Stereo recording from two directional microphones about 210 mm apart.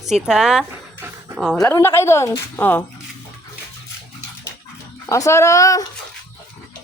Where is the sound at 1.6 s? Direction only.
10° left (ahead or behind).